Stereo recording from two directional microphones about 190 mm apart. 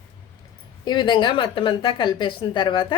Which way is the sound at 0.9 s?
25° left (ahead or behind).